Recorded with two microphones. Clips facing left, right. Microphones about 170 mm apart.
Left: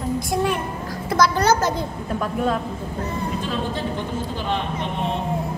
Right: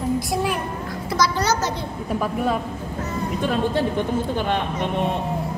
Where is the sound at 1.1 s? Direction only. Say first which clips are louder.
Left 3 dB; 55° left (ahead or behind).